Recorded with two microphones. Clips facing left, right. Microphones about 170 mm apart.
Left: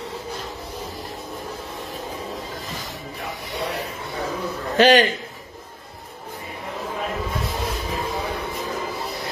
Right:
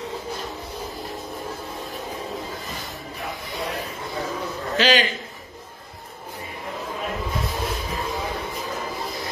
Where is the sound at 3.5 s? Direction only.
75° left (ahead or behind).